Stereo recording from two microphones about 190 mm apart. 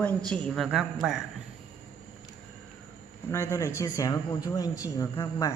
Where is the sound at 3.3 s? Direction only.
15° left (ahead or behind).